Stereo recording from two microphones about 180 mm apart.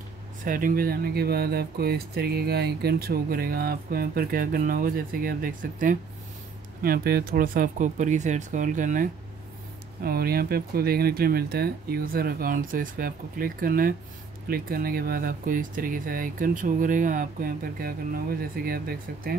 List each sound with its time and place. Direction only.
0.5 s speech: 50° right (ahead or behind)
10.0 s speech: 55° right (ahead or behind)